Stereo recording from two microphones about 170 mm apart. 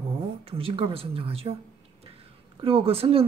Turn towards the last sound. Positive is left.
turn(degrees=-35)  # may be behind; listen again after turning